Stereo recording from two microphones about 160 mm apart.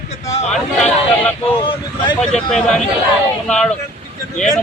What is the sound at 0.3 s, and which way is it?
Speech, 45° left (ahead or behind).